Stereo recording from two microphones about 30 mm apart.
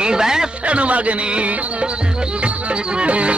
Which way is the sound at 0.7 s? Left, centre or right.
Right.